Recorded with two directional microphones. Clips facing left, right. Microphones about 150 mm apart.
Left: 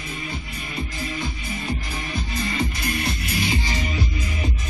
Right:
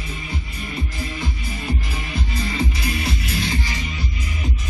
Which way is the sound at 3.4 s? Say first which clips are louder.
Left 3 dB; 15° left (ahead or behind).